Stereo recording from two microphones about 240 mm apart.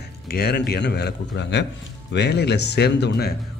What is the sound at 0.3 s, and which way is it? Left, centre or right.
Speech, left.